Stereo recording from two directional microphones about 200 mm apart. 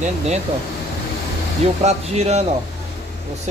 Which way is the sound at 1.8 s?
35° right (ahead or behind).